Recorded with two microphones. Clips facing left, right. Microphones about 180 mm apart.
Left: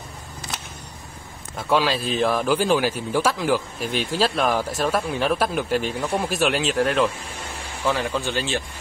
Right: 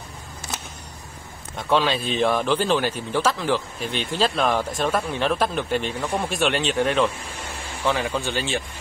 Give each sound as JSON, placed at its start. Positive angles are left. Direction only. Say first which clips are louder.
{"t": 1.6, "sound": "a man's voice", "louder": "even", "side_deg": 5}